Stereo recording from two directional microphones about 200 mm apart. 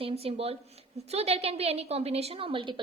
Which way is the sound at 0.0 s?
30° right (ahead or behind).